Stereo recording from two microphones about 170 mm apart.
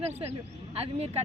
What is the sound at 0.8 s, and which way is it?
Speech, 35° right (ahead or behind).